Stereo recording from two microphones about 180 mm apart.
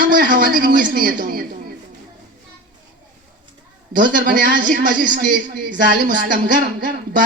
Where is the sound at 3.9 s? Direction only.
50° right (ahead or behind).